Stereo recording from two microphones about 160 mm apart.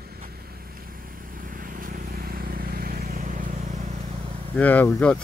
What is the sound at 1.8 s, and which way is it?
Vehicle, 65° right (ahead or behind).